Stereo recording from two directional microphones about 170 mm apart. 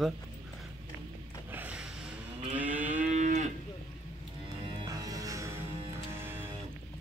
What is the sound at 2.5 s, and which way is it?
Moo, 10° right (ahead or behind).